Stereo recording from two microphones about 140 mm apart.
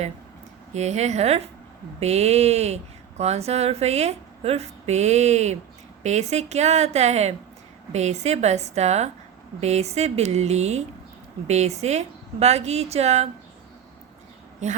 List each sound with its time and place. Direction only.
0.7 s speech: 55° right (ahead or behind)
14.6 s a woman's voice: 55° right (ahead or behind)